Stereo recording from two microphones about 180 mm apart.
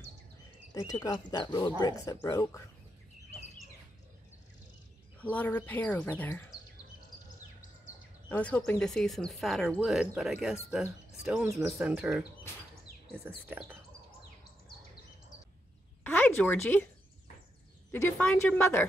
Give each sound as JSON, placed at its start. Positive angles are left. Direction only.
{"t": 0.7, "sound": "speech", "side_deg": 20}
{"t": 5.3, "sound": "speech", "side_deg": 10}
{"t": 8.3, "sound": "speech", "side_deg": 10}
{"t": 13.3, "sound": "speech", "side_deg": -5}
{"t": 16.0, "sound": "a sound", "side_deg": 10}
{"t": 17.9, "sound": "speech", "side_deg": 10}